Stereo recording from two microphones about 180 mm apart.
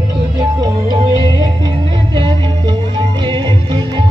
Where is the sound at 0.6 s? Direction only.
25° right (ahead or behind).